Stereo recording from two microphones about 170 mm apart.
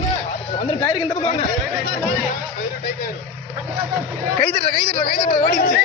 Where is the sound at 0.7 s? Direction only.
30° left (ahead or behind).